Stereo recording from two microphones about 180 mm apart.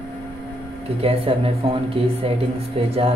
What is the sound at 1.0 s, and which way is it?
Speech, 30° right (ahead or behind).